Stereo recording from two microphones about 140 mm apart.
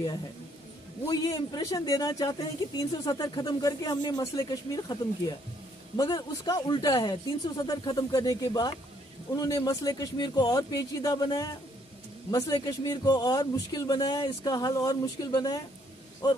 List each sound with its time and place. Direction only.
1.0 s speech: 25° left (ahead or behind)